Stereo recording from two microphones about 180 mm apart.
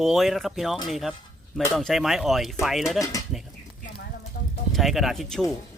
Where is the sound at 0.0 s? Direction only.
Centre (ahead or behind).